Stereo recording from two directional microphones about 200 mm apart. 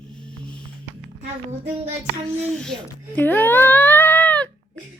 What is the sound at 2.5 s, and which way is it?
Speech, 5° left (ahead or behind).